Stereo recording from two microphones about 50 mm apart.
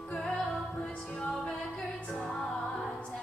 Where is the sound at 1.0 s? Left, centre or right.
Left.